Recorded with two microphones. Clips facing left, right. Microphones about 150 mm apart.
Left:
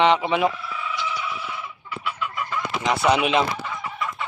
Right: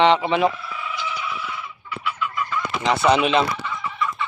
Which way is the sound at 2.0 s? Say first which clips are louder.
Right 2 dB; 40° left (ahead or behind).